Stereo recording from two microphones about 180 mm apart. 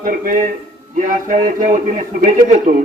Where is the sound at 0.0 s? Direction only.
50° right (ahead or behind).